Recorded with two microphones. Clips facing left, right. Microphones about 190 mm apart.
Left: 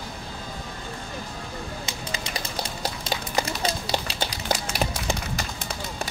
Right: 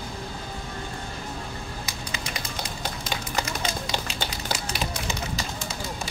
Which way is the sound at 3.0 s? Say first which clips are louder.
Left 3 dB; 35° left (ahead or behind).